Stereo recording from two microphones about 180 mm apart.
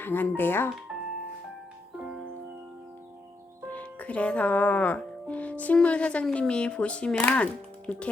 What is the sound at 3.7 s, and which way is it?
Speech, 10° left (ahead or behind).